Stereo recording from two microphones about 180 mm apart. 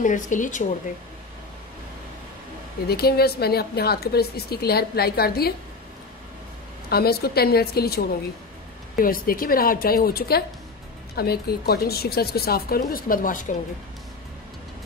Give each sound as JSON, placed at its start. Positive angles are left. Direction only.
{"t": 0.0, "sound": "a woman's voice", "side_deg": 45}
{"t": 2.9, "sound": "a woman's voice", "side_deg": 60}
{"t": 6.9, "sound": "a woman's voice", "side_deg": 60}